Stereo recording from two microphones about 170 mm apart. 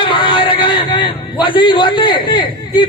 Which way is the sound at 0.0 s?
30° left (ahead or behind).